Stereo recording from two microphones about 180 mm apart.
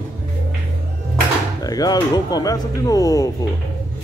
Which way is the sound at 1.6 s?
20° left (ahead or behind).